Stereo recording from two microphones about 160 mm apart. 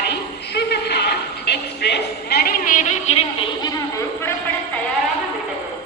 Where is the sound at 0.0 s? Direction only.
90° left; by 3.7 s 35° left (ahead or behind).